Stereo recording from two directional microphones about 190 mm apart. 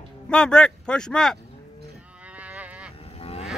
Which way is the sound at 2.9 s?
30° left (ahead or behind).